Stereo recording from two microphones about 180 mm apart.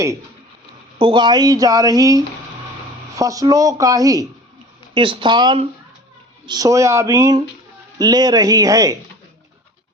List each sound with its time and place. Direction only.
0.9 s speech: 25° right (ahead or behind)